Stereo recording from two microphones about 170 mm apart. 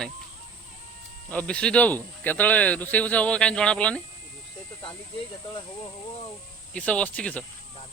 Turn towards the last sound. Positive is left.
turn(degrees=5)  # may be behind; listen again after turning